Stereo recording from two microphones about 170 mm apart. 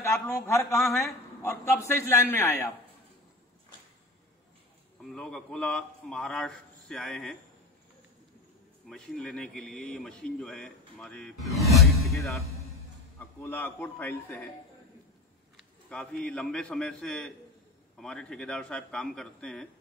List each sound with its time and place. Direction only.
0.0 s a man's voice: 15° left (ahead or behind)
5.0 s speech: 5° left (ahead or behind)
8.8 s speech: 5° left (ahead or behind)
13.2 s a man's voice: 10° left (ahead or behind)
15.5 s a man's voice: 5° left (ahead or behind)